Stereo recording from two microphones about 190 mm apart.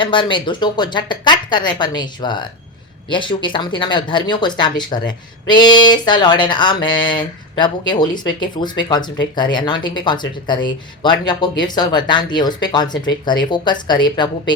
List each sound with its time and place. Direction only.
0.0 s speech: 25° left (ahead or behind)